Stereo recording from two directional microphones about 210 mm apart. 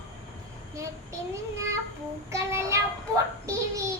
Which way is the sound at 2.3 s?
15° right (ahead or behind).